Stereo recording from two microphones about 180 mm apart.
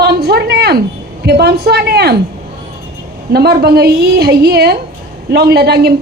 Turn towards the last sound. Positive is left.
turn(degrees=-65)  # may be behind; listen again after turning